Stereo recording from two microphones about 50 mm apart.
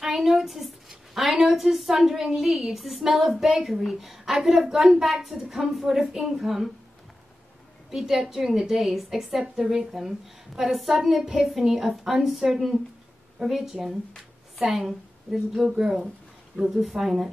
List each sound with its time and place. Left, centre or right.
0.0 s a woman's voice: centre
7.9 s a woman's voice: centre
14.1 s a sound: centre
14.8 s a woman's voice: centre